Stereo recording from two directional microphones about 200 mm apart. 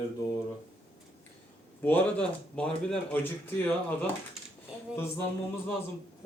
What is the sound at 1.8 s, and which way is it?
Speech, 10° left (ahead or behind).